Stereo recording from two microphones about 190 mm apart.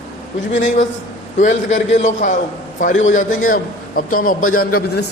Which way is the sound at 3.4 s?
45° left (ahead or behind).